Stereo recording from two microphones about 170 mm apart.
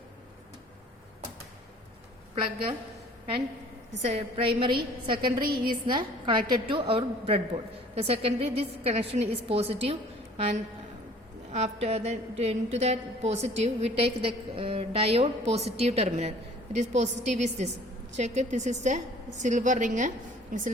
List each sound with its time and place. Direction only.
2.3 s a woman's voice: 35° right (ahead or behind)
4.0 s a woman's voice: 35° right (ahead or behind)